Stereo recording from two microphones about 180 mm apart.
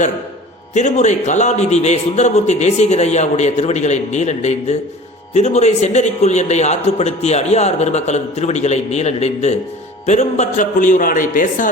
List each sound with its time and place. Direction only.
0.7 s a man's voice: 40° left (ahead or behind)